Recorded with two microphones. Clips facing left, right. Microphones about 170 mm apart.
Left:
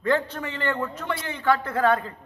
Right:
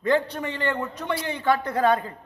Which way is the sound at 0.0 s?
15° right (ahead or behind).